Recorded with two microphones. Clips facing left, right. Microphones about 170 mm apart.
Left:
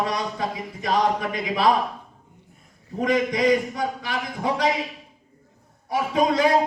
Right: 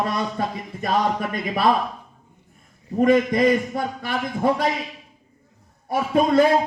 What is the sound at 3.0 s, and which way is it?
A man's voice, 55° right (ahead or behind).